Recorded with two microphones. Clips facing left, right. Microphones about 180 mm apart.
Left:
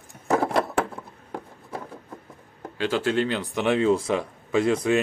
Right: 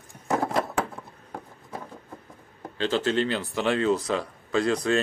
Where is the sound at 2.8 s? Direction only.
10° left (ahead or behind).